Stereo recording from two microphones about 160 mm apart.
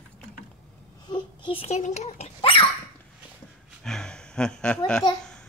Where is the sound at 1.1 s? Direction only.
30° left (ahead or behind).